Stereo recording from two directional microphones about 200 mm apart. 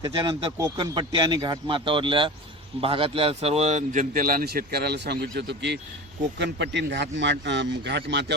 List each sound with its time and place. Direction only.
0.0 s a man's voice: 25° right (ahead or behind); by 8.4 s 55° right (ahead or behind)